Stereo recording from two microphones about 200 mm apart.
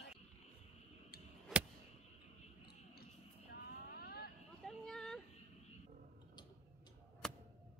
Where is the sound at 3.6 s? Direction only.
50° left (ahead or behind).